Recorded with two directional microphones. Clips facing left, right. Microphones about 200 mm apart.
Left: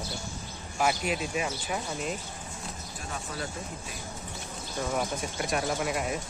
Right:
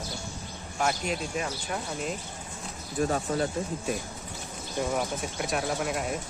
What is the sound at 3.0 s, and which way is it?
Speech, 45° right (ahead or behind).